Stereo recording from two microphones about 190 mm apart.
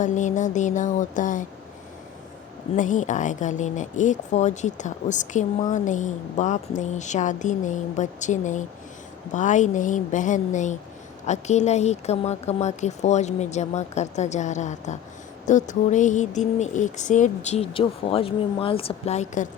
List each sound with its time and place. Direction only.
0.0 s speech: 40° left (ahead or behind)
2.7 s speech: 40° left (ahead or behind)